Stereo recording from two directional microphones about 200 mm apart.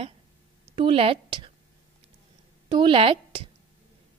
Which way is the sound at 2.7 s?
25° right (ahead or behind).